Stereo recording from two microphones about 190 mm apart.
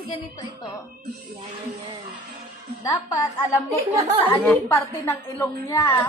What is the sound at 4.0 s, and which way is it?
Speech, 30° right (ahead or behind).